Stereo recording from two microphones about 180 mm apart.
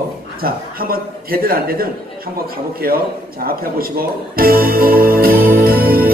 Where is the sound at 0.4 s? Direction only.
55° right (ahead or behind).